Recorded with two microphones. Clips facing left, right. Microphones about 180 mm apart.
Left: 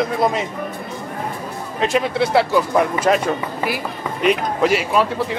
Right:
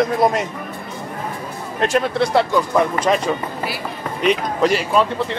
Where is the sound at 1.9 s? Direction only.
Centre (ahead or behind).